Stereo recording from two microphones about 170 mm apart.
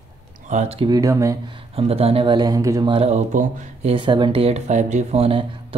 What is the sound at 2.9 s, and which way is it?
Speech, 35° right (ahead or behind).